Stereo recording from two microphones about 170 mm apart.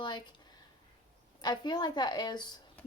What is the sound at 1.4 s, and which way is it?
A woman's voice, 25° left (ahead or behind).